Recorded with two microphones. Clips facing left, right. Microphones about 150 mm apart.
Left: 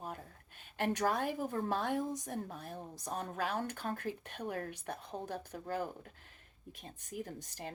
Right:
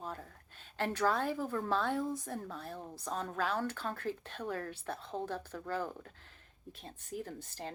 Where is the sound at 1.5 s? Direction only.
35° left (ahead or behind).